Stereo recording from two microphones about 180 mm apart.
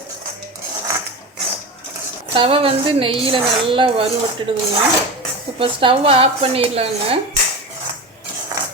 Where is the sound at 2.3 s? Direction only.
30° right (ahead or behind).